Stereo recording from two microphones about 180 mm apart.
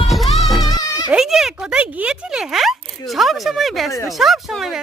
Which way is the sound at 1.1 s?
5° right (ahead or behind).